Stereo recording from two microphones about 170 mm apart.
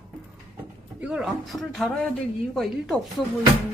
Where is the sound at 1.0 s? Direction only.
5° right (ahead or behind).